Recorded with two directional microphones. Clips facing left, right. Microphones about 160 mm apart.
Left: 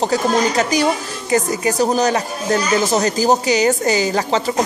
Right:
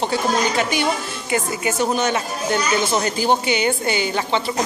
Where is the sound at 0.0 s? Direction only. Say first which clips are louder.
Left 3 dB; 40° left (ahead or behind).